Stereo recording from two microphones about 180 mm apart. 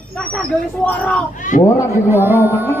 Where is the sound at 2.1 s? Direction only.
10° right (ahead or behind).